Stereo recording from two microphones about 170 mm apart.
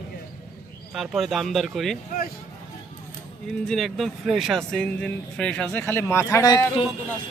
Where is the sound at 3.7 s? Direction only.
Centre (ahead or behind); by 6.7 s 20° left (ahead or behind).